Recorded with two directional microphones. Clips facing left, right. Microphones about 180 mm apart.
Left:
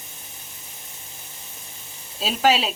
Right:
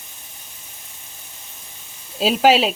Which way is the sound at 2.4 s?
30° right (ahead or behind).